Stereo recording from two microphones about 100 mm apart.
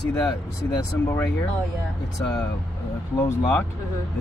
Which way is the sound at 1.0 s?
25° left (ahead or behind).